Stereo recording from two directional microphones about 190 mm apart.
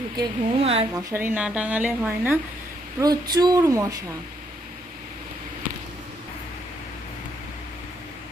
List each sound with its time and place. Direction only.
0.2 s a woman's voice: 30° right (ahead or behind)
0.9 s a woman's voice: 10° right (ahead or behind)
3.0 s speech: 20° right (ahead or behind)